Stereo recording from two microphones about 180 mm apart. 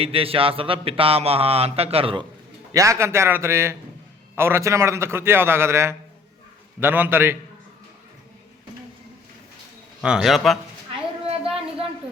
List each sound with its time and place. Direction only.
0.0 s speech: 30° right (ahead or behind)
2.7 s a man's voice: 15° right (ahead or behind)
10.0 s a man's voice: 5° right (ahead or behind)